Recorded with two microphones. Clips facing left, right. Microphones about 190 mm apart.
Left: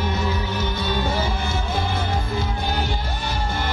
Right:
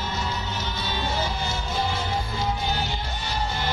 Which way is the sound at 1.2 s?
55° left (ahead or behind).